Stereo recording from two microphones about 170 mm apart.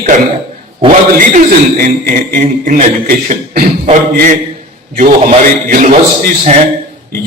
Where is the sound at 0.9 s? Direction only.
50° right (ahead or behind).